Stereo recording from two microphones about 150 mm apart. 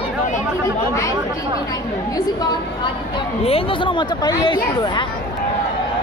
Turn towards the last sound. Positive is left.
turn(degrees=30)  # may be behind; listen again after turning